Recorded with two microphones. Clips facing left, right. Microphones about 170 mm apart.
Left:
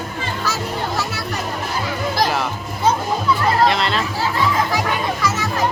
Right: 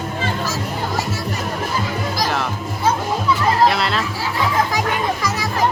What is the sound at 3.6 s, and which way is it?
Chatter, 5° right (ahead or behind).